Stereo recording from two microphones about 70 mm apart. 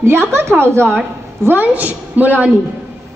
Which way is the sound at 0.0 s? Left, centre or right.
Right.